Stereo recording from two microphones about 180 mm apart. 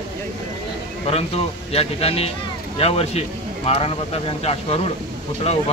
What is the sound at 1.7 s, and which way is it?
A man's voice, 35° left (ahead or behind).